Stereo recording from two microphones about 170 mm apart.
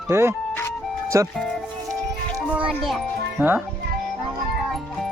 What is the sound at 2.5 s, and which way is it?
Music, 5° right (ahead or behind).